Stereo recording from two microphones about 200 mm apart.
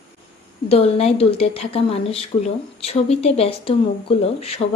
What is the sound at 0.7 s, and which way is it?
A woman's voice, 30° left (ahead or behind).